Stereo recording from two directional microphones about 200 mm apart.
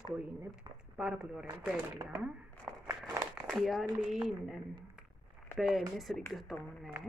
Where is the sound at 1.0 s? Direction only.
5° right (ahead or behind).